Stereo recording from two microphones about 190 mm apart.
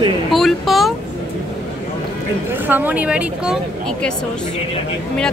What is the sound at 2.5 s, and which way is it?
A man's voice, 10° right (ahead or behind).